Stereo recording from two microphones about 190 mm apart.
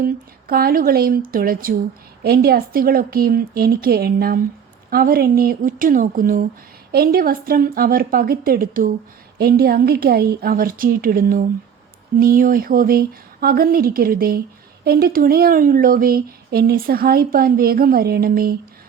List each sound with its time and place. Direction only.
0.0 s speech: 50° right (ahead or behind)